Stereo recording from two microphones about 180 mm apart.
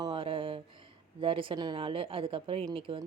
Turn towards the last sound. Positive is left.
turn(degrees=-30)  # may be behind; listen again after turning